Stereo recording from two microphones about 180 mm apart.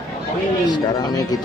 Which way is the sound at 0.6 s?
20° left (ahead or behind).